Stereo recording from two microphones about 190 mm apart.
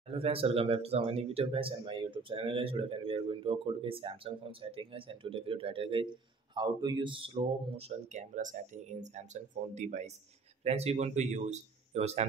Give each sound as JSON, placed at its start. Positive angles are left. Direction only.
{"t": 0.1, "sound": "speech", "side_deg": -30}